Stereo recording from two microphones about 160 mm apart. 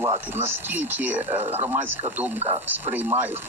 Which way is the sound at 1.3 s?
40° right (ahead or behind).